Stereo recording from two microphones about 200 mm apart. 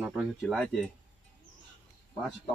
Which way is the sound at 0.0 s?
10° right (ahead or behind).